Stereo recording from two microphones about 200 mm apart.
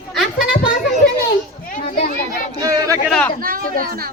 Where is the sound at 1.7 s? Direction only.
45° left (ahead or behind).